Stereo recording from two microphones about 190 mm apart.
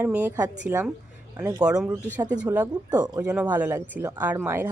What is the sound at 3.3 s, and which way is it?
Speech, 5° right (ahead or behind).